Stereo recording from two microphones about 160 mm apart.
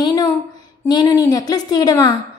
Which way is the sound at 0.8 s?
25° left (ahead or behind).